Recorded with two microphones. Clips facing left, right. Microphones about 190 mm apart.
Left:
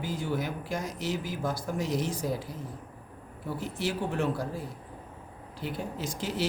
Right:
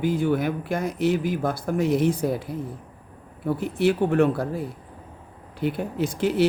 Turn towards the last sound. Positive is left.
turn(degrees=-60)  # may be behind; listen again after turning